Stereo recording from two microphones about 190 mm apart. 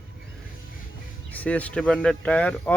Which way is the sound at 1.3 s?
5° left (ahead or behind).